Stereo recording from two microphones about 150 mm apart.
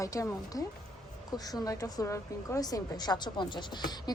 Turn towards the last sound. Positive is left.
turn(degrees=25)  # may be behind; listen again after turning